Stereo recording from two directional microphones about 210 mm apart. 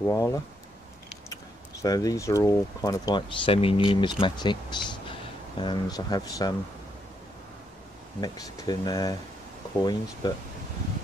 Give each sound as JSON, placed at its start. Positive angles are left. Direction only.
{"t": 0.0, "sound": "speech", "side_deg": 15}
{"t": 8.2, "sound": "speech", "side_deg": 20}